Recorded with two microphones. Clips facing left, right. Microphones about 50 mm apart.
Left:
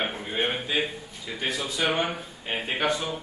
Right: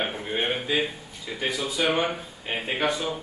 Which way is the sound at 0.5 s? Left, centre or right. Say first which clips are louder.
Right 2 dB; centre.